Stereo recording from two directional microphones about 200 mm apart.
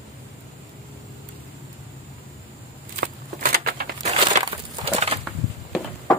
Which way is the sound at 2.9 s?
50° right (ahead or behind).